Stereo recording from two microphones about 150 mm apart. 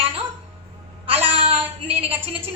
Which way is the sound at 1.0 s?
40° right (ahead or behind).